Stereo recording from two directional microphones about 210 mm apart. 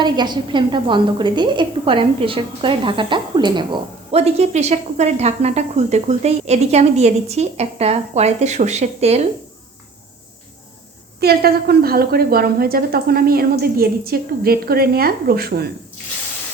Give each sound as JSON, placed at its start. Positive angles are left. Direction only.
{"t": 0.0, "sound": "a woman's voice", "side_deg": -20}
{"t": 11.2, "sound": "a woman's voice", "side_deg": -45}